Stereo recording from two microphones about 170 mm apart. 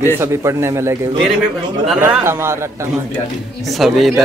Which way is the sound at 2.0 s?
15° right (ahead or behind).